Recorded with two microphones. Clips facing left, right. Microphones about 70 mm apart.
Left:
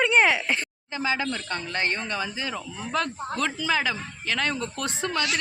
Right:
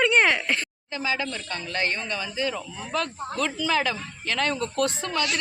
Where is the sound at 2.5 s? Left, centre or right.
Centre.